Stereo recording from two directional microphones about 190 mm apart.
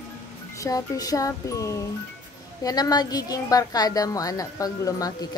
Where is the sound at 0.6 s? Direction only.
20° left (ahead or behind).